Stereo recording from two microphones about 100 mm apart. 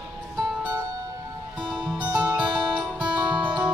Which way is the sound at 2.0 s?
15° right (ahead or behind).